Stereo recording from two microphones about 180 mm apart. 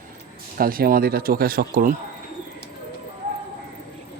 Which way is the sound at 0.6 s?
55° right (ahead or behind).